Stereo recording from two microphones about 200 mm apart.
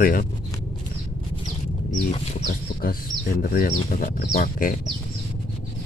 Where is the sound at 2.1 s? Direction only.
45° left (ahead or behind).